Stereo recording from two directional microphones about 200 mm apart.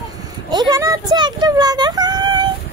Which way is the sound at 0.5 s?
20° right (ahead or behind).